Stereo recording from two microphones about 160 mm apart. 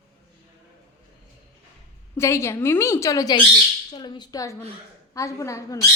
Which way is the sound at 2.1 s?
15° left (ahead or behind).